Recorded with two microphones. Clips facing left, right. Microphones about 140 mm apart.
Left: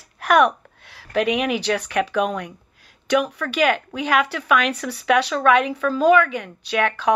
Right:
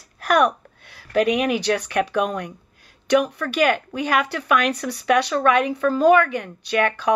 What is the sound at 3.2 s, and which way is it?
Speech, 40° right (ahead or behind).